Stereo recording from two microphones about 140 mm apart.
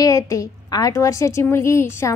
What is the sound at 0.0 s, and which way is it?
A woman's voice, 25° left (ahead or behind).